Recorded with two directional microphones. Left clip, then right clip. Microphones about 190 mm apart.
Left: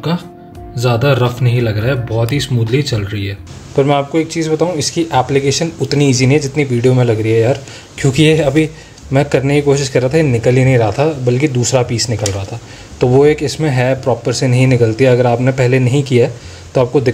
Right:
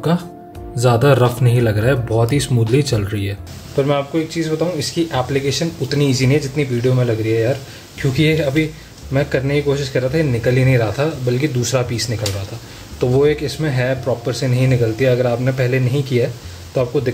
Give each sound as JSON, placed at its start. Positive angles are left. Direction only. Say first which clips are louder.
{"t": 0.7, "sound": "speech", "louder": "even", "side_deg": -5}
{"t": 3.7, "sound": "speech", "louder": "left 5 dB", "side_deg": 30}